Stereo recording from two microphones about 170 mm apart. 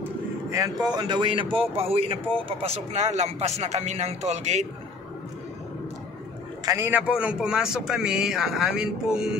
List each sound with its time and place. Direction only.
0.0 s vehicle: 20° right (ahead or behind)
0.9 s speech: 25° right (ahead or behind); by 4.6 s 40° right (ahead or behind)
6.6 s a man's voice: 15° right (ahead or behind)